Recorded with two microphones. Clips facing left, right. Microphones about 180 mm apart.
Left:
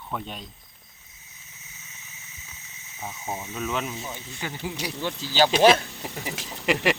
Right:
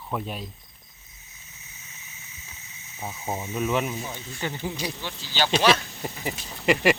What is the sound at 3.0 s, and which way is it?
Speech, 10° right (ahead or behind).